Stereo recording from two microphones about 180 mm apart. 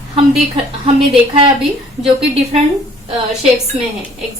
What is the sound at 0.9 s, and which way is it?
Speech, 30° right (ahead or behind).